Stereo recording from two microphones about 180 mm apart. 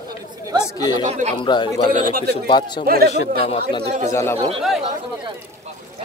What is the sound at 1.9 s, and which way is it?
Speech, 50° right (ahead or behind).